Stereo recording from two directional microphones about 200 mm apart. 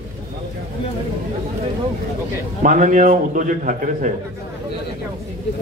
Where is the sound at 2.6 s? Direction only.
40° right (ahead or behind).